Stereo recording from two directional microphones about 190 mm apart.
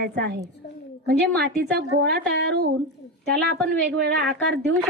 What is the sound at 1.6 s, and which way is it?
A woman's voice, 60° right (ahead or behind).